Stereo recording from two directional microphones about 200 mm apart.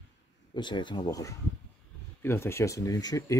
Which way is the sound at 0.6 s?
25° left (ahead or behind).